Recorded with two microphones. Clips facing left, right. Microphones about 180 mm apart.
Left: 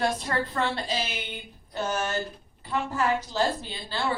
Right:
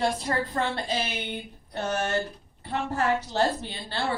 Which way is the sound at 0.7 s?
55° right (ahead or behind).